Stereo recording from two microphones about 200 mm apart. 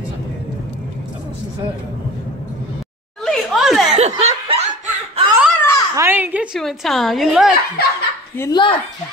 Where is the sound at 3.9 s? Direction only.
35° right (ahead or behind).